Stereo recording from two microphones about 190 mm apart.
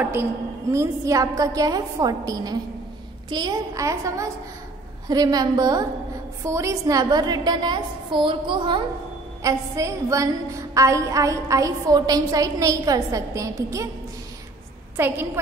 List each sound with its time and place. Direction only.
0.0 s a woman's voice: 10° right (ahead or behind)
15.0 s a woman's voice: 10° right (ahead or behind)